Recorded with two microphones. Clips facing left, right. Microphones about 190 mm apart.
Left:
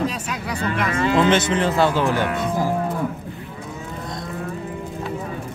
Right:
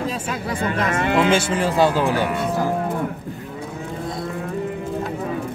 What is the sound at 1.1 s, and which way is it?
Speech, 10° right (ahead or behind).